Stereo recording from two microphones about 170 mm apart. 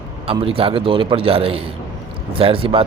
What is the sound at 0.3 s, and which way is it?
A man's voice, 35° right (ahead or behind).